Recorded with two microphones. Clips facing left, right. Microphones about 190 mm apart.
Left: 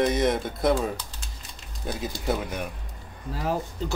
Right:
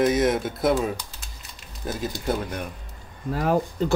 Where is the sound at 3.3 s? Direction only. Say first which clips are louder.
Right 6 dB; 60° right (ahead or behind).